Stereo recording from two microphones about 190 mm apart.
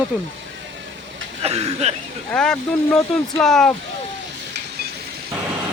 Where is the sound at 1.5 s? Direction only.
35° right (ahead or behind).